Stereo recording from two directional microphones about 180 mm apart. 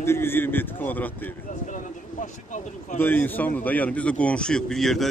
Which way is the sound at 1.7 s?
45° left (ahead or behind).